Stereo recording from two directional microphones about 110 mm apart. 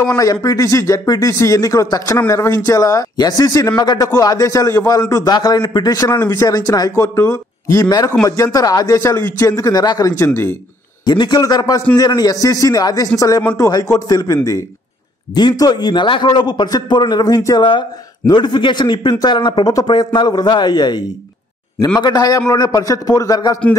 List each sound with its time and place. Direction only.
0.1 s a man's voice: 35° left (ahead or behind)
10.3 s speech: 20° left (ahead or behind)
11.1 s a man's voice: 40° left (ahead or behind)
22.0 s a man's voice: 35° left (ahead or behind)